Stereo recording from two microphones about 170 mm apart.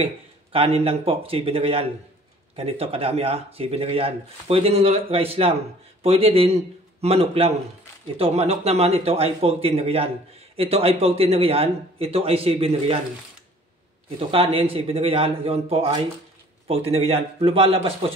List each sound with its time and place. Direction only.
0.0 s a man's voice: 35° right (ahead or behind)
14.3 s a man's voice: 35° right (ahead or behind)